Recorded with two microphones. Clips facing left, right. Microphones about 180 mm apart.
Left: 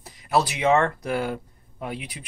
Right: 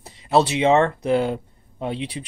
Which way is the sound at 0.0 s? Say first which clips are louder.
Right 4 dB; 25° right (ahead or behind).